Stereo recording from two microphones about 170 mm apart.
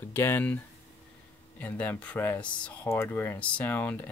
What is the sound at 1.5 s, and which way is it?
Speech, 10° left (ahead or behind).